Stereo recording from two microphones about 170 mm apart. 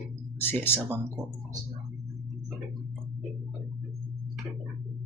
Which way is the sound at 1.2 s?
20° right (ahead or behind).